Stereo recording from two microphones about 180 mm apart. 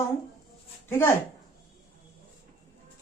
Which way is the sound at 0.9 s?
15° left (ahead or behind).